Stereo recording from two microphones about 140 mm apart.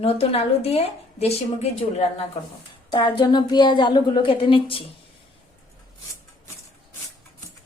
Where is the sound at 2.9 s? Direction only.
35° left (ahead or behind).